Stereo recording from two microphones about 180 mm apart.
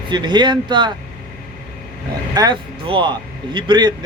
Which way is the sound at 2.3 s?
25° right (ahead or behind).